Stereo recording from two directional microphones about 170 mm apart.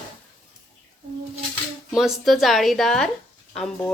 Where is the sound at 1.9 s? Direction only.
Centre (ahead or behind).